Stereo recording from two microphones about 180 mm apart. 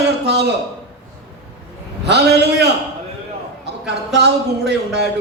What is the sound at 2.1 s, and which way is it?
Speech, 65° right (ahead or behind).